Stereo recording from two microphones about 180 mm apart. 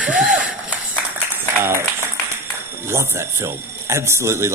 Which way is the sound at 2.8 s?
15° right (ahead or behind).